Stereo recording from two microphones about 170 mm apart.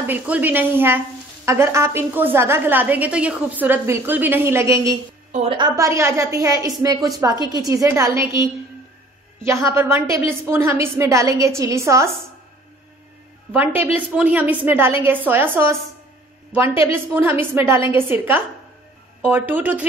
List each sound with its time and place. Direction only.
0.0 s speech: 10° right (ahead or behind)
5.3 s a woman's voice: 35° right (ahead or behind); by 12.1 s 15° right (ahead or behind)
13.9 s speech: 10° right (ahead or behind)
16.8 s speech: 10° right (ahead or behind)